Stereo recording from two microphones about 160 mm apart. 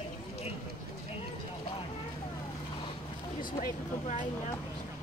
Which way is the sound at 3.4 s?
50° left (ahead or behind).